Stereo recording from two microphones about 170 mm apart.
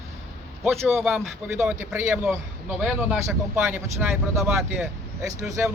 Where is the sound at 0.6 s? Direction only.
Centre (ahead or behind).